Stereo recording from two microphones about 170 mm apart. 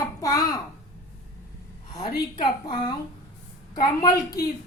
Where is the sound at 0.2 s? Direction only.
20° left (ahead or behind).